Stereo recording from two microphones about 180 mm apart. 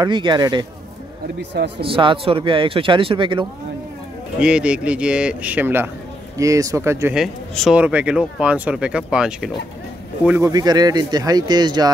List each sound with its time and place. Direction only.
0.0 s speech: 25° right (ahead or behind)
1.8 s speech: 30° right (ahead or behind)
4.4 s speech: 5° right (ahead or behind)
7.2 s speech: centre (ahead or behind)
10.4 s speech: 20° right (ahead or behind)